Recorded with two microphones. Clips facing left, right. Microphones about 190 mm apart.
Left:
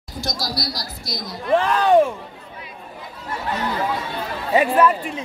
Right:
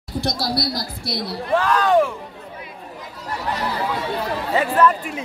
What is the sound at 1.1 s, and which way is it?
Speech, 30° right (ahead or behind).